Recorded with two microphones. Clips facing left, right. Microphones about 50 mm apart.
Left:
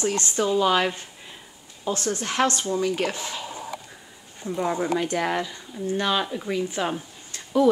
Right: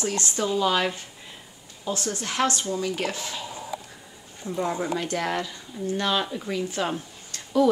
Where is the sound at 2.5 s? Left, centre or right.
Left.